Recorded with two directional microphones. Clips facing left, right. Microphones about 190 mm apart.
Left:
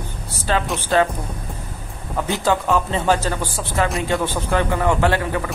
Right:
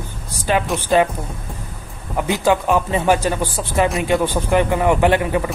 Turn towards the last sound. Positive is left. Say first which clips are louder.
# right 3 dB
turn(degrees=-20)  # may be behind; listen again after turning